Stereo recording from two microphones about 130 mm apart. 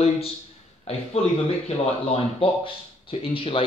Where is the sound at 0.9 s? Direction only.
50° left (ahead or behind).